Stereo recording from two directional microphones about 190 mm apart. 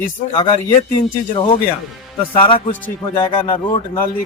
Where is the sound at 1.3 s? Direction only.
25° left (ahead or behind).